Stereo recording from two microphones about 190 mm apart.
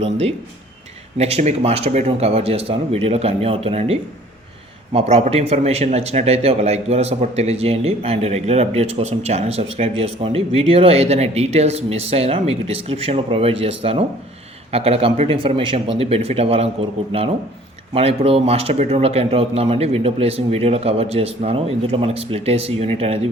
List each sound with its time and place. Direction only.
0.0 s speech: 30° right (ahead or behind)
4.9 s speech: 35° right (ahead or behind)